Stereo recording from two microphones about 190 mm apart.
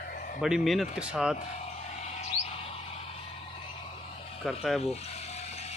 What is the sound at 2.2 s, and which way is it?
Chirp, 35° left (ahead or behind).